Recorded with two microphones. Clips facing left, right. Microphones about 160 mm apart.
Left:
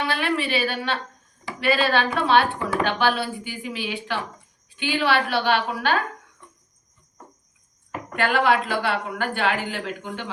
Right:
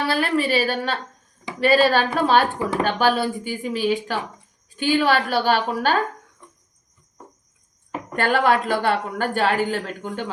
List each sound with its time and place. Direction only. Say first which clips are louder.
0.0 s a woman's voice: right 3 dB; 40° right (ahead or behind)
8.1 s speech: right 2 dB; 45° right (ahead or behind)